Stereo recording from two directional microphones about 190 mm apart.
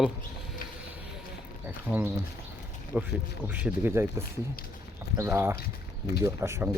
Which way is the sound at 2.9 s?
5° right (ahead or behind).